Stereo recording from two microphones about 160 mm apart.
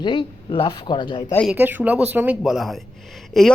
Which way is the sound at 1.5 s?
10° right (ahead or behind).